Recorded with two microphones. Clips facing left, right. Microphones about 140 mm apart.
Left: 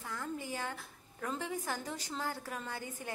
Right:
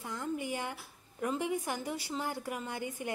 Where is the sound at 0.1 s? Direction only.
15° right (ahead or behind).